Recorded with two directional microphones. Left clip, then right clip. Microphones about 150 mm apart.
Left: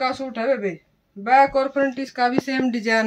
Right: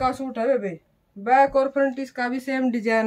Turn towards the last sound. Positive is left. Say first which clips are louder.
# left 2 dB
turn(degrees=0)  # may be behind; listen again after turning